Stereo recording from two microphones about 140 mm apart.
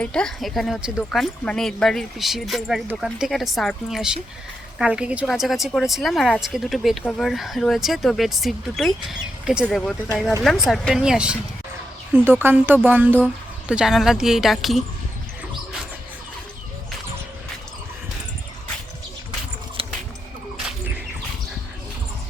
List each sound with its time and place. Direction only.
0.0 s speech: 5° left (ahead or behind)
19.8 s music: 40° right (ahead or behind)